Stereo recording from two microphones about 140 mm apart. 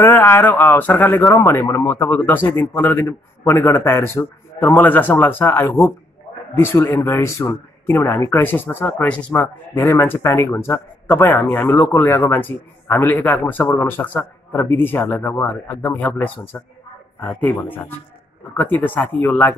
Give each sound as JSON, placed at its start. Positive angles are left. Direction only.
{"t": 0.0, "sound": "speech", "side_deg": 15}